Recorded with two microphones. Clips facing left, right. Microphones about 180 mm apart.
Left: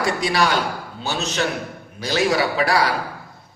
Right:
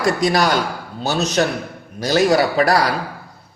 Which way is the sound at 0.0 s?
40° right (ahead or behind).